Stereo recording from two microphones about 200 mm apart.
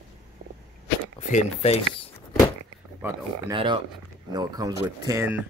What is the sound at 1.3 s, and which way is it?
Speech, 30° left (ahead or behind).